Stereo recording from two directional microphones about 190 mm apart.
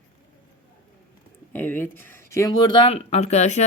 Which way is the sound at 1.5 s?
10° left (ahead or behind).